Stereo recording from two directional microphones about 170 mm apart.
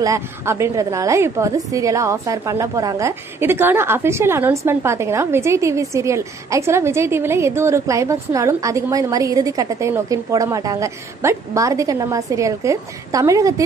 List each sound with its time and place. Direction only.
0.0 s a woman's voice: 15° right (ahead or behind)